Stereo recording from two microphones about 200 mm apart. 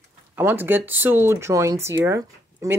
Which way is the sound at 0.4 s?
10° right (ahead or behind).